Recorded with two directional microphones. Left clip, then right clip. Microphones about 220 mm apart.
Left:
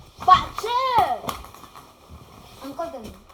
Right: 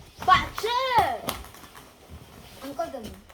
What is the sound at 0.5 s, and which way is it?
Children playing, 20° left (ahead or behind).